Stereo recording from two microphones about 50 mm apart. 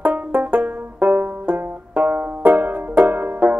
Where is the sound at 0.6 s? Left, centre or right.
Right.